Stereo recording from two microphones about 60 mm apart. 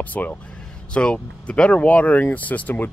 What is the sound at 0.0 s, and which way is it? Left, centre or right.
Speech, left.